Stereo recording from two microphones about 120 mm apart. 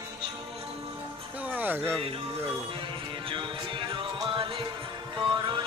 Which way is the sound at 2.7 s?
45° right (ahead or behind).